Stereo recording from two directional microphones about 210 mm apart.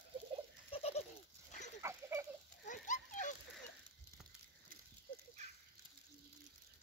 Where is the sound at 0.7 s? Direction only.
30° left (ahead or behind).